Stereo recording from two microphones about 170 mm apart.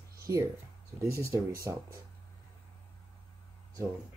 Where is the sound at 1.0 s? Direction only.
15° right (ahead or behind).